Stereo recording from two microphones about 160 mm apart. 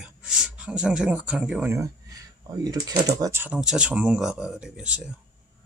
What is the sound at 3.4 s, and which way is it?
Speech, 5° right (ahead or behind).